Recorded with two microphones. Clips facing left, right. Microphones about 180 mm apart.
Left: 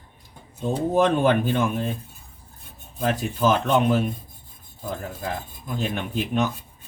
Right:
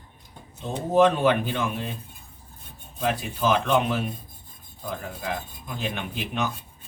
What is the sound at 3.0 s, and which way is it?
Speech, 45° left (ahead or behind).